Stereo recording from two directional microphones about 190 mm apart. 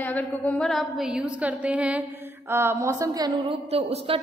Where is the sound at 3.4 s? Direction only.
30° right (ahead or behind).